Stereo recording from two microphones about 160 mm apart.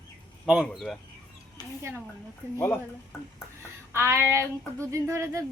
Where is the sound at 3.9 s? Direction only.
15° right (ahead or behind).